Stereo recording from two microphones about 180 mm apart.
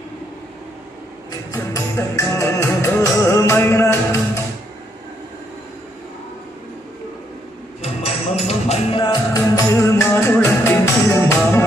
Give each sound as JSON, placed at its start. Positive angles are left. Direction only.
{"t": 1.3, "sound": "music", "side_deg": 20}
{"t": 7.8, "sound": "music", "side_deg": 35}
{"t": 9.0, "sound": "music", "side_deg": 20}